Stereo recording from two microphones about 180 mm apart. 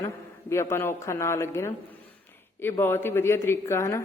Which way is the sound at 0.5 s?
15° left (ahead or behind).